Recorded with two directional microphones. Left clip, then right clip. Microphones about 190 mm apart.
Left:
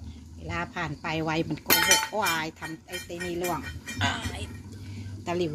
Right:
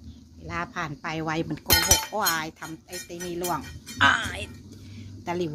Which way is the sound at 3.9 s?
40° right (ahead or behind).